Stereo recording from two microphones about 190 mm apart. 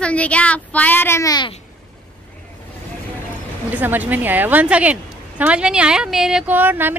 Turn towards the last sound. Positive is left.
turn(degrees=-10)  # may be behind; listen again after turning